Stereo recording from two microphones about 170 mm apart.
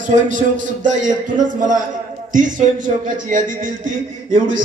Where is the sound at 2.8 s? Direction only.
50° right (ahead or behind).